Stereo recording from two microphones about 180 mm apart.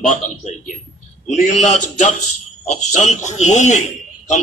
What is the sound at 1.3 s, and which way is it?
A man's voice, 40° left (ahead or behind).